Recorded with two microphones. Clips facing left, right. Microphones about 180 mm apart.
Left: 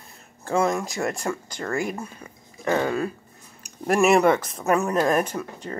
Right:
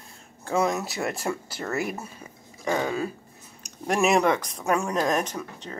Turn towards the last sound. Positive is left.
turn(degrees=5)  # may be behind; listen again after turning